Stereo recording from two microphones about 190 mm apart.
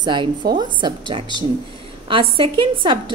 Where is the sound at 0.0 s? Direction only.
25° right (ahead or behind).